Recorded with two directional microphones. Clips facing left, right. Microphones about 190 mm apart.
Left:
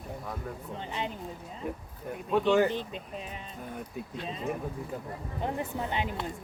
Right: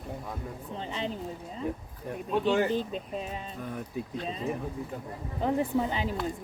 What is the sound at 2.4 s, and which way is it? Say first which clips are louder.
Speech: left 1 dB; 35° right (ahead or behind).